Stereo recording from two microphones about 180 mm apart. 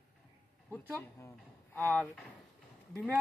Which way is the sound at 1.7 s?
5° left (ahead or behind).